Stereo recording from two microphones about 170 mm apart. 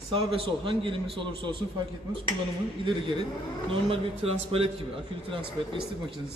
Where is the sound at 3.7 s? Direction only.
35° right (ahead or behind).